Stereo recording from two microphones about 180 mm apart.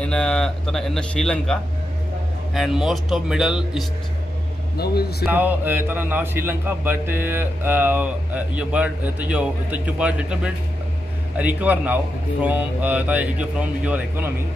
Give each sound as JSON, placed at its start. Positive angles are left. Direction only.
{"t": 0.0, "sound": "speech", "side_deg": 5}
{"t": 4.7, "sound": "speech", "side_deg": 60}
{"t": 5.2, "sound": "a man's voice", "side_deg": -10}